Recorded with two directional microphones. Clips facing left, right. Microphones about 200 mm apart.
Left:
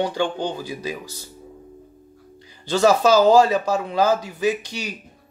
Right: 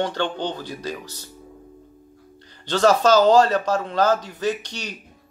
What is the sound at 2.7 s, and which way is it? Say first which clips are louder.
Speech: left 1 dB; 10° left (ahead or behind).